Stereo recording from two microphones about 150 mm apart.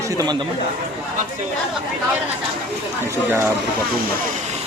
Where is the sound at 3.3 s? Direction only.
15° right (ahead or behind).